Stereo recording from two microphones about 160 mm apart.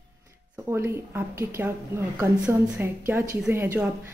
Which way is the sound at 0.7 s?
15° right (ahead or behind).